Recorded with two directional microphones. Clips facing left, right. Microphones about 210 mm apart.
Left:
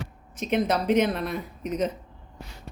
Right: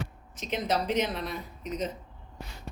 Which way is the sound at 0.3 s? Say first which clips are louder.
Left 5 dB; 55° left (ahead or behind).